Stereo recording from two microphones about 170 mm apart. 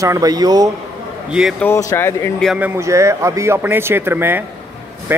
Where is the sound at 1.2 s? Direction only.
5° right (ahead or behind).